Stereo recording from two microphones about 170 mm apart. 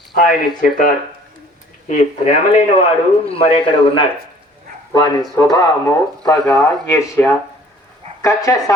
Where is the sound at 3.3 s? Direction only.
35° left (ahead or behind).